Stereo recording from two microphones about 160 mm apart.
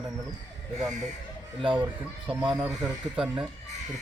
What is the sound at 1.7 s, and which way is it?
Speech, 10° right (ahead or behind).